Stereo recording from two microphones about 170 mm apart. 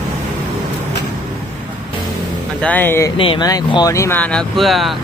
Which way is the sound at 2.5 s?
10° left (ahead or behind).